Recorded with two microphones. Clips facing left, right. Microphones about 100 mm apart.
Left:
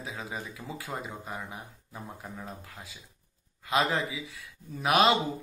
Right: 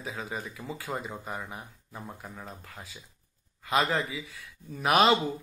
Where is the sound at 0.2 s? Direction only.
15° left (ahead or behind).